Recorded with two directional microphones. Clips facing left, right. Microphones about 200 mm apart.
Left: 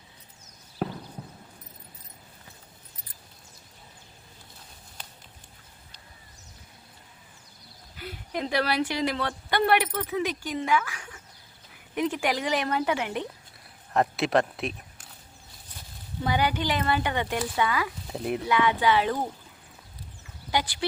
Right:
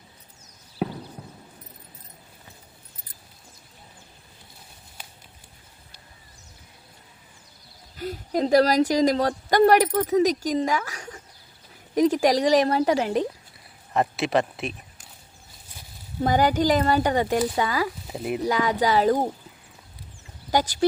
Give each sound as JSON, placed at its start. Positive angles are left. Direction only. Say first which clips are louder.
{"t": 0.8, "sound": "horse", "louder": "right 3 dB", "side_deg": -5}
{"t": 7.9, "sound": "a woman's voice", "louder": "right 8 dB", "side_deg": -40}
{"t": 13.9, "sound": "speech", "louder": "right 1 dB", "side_deg": 0}
{"t": 16.2, "sound": "a woman's voice", "louder": "right 6 dB", "side_deg": -45}
{"t": 18.1, "sound": "speech", "louder": "right 1 dB", "side_deg": -5}
{"t": 18.4, "sound": "a woman's voice", "louder": "right 1 dB", "side_deg": -40}
{"t": 20.5, "sound": "speech", "louder": "right 5 dB", "side_deg": -45}